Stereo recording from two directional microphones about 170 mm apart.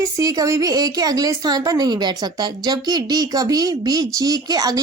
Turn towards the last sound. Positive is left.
turn(degrees=-20)  # may be behind; listen again after turning